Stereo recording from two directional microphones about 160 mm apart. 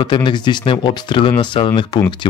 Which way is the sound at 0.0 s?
30° left (ahead or behind).